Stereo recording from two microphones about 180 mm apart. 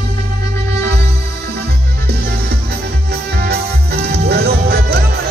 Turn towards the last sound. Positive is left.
turn(degrees=-60)  # may be behind; listen again after turning